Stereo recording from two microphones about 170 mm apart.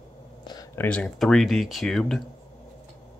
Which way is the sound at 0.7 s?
10° left (ahead or behind).